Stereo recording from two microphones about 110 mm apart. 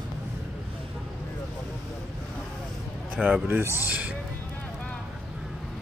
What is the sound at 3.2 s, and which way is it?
Speech, 15° right (ahead or behind).